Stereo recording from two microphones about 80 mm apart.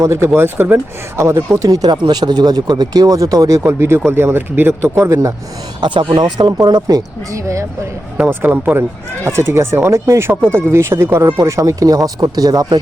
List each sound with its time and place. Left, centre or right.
0.1 s speech: right
1.5 s speech: right
5.8 s speech: right
6.7 s speech: right
8.3 s speech: right